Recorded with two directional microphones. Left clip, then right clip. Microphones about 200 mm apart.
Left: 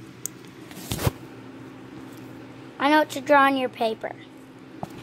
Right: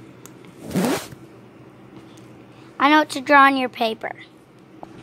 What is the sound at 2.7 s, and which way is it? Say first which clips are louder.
A woman's voice: right 4 dB; 30° right (ahead or behind).